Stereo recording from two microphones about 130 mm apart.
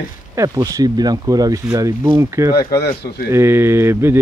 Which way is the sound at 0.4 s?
25° right (ahead or behind).